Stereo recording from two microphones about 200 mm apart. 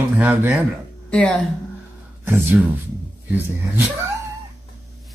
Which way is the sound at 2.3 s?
10° right (ahead or behind).